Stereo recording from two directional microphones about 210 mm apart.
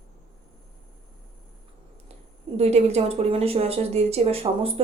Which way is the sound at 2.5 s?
30° right (ahead or behind).